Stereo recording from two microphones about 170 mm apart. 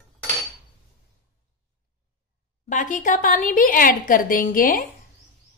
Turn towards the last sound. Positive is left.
turn(degrees=55)  # may be behind; listen again after turning